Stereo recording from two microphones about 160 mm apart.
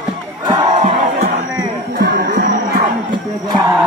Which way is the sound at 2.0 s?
75° right (ahead or behind).